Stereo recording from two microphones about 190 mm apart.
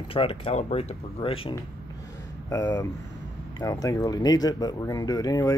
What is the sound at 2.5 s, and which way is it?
Speech, 20° left (ahead or behind).